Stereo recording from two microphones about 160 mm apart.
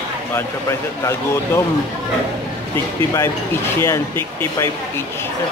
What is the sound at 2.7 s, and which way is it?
Speech, 20° left (ahead or behind).